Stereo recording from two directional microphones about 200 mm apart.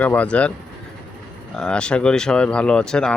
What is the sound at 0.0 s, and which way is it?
Speech, 5° left (ahead or behind).